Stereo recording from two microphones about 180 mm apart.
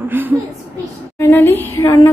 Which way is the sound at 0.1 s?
10° right (ahead or behind).